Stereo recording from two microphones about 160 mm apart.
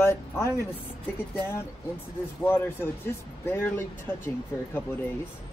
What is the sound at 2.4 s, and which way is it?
Speech, 15° left (ahead or behind).